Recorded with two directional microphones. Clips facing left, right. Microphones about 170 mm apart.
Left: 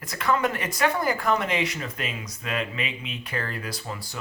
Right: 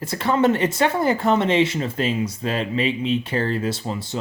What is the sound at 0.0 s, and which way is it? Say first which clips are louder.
Speech: right 6 dB; 30° right (ahead or behind).